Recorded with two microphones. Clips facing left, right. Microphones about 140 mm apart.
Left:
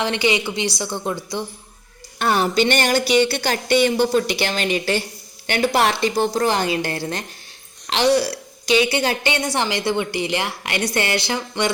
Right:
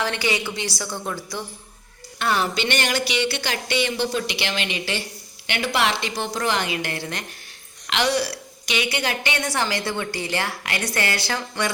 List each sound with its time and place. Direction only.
0.0 s a woman's voice: 20° left (ahead or behind)
2.1 s a woman's voice: 45° left (ahead or behind); by 11.7 s 20° left (ahead or behind)